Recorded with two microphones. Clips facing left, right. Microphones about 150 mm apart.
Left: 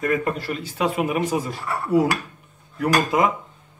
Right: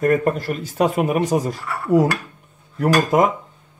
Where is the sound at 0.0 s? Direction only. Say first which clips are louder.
Right 5 dB; 45° right (ahead or behind).